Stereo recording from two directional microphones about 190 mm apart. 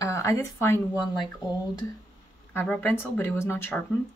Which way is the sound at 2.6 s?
5° left (ahead or behind).